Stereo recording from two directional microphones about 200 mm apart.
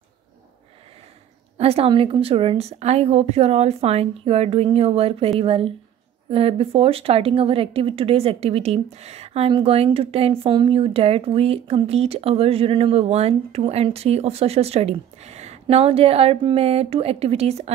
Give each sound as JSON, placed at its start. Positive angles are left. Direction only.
{"t": 1.6, "sound": "a woman's voice", "side_deg": -30}